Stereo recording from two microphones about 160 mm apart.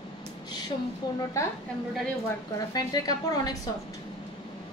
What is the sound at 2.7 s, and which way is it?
Speech, 25° left (ahead or behind).